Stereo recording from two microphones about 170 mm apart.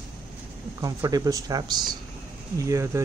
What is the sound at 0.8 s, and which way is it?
Speech, 20° right (ahead or behind).